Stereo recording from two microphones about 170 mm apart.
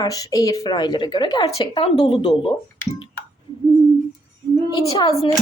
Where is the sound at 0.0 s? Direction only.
20° left (ahead or behind).